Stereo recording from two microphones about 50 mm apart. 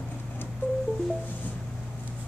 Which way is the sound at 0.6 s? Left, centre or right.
Left.